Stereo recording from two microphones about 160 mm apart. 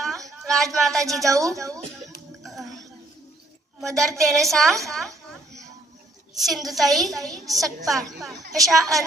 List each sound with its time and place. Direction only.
0.3 s a woman's voice: centre (ahead or behind)
1.4 s a woman's voice: 20° right (ahead or behind)
3.9 s a woman's voice: centre (ahead or behind)
6.3 s a woman's voice: centre (ahead or behind)
7.3 s a woman's voice: 20° right (ahead or behind)
7.6 s a woman's voice: centre (ahead or behind)